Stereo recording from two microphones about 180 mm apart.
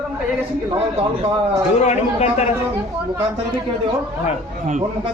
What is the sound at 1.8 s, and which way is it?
Speech, 35° left (ahead or behind).